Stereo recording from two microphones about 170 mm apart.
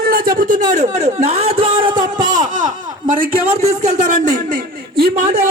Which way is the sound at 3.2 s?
40° right (ahead or behind).